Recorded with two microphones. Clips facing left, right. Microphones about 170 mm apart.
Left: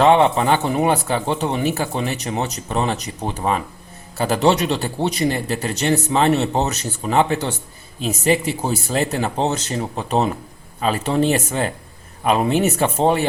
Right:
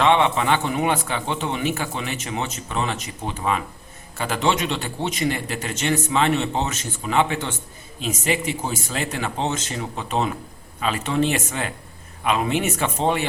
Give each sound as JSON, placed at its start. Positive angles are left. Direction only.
{"t": 0.0, "sound": "speech", "side_deg": 35}